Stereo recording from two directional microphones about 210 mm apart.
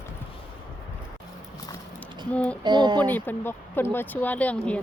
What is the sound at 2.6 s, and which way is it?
Speech, 20° right (ahead or behind).